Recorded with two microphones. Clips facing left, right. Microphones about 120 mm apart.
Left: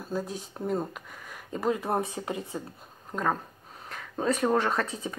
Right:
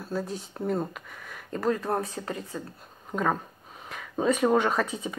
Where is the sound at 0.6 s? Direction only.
Centre (ahead or behind).